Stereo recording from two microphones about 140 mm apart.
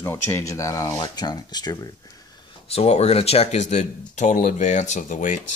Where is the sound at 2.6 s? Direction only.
45° left (ahead or behind); by 5.4 s 65° left (ahead or behind).